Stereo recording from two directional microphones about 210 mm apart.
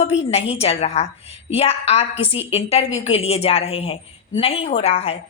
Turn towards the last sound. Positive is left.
turn(degrees=30)  # may be behind; listen again after turning